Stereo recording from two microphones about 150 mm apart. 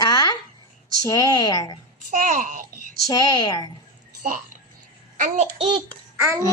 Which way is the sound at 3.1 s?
25° left (ahead or behind).